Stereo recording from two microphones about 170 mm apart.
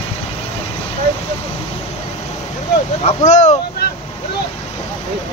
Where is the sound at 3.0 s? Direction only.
40° left (ahead or behind).